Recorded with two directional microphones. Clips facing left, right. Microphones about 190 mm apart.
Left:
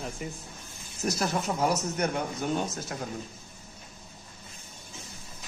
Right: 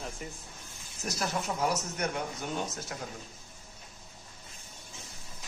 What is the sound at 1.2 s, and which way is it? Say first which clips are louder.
Speech: left 2 dB; 40° left (ahead or behind).